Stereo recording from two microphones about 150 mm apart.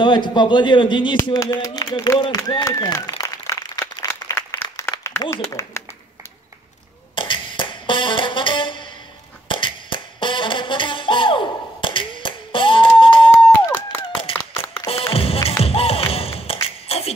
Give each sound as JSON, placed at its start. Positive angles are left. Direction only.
{"t": 0.0, "sound": "speech", "side_deg": 30}
{"t": 1.1, "sound": "a man's voice", "side_deg": 20}
{"t": 4.1, "sound": "a sound", "side_deg": 20}
{"t": 7.2, "sound": "music", "side_deg": 35}
{"t": 13.5, "sound": "a sound", "side_deg": 15}
{"t": 15.1, "sound": "music", "side_deg": 40}
{"t": 16.6, "sound": "beatboxing", "side_deg": 40}